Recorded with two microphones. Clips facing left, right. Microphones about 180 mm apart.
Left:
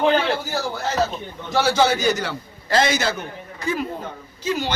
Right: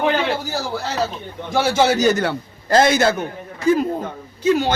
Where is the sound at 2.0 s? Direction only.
50° right (ahead or behind).